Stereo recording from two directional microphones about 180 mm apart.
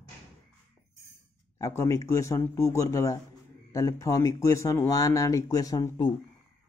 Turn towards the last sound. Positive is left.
turn(degrees=20)  # may be behind; listen again after turning